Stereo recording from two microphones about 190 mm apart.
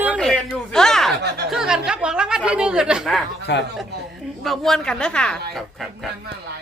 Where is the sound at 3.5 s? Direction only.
65° left (ahead or behind).